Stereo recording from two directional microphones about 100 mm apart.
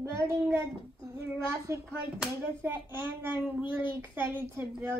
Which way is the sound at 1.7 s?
30° right (ahead or behind).